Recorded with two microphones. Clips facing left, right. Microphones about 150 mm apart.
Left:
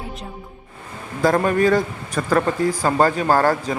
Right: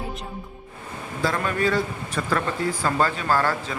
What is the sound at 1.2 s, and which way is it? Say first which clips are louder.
Speech: left 7 dB; 45° left (ahead or behind).